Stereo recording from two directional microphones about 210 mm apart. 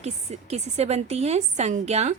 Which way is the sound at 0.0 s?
30° right (ahead or behind).